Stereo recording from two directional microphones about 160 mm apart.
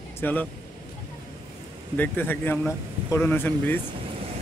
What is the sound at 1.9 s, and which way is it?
Speech, 10° left (ahead or behind).